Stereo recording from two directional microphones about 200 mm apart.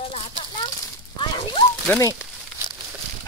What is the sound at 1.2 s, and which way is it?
Dog, 25° left (ahead or behind).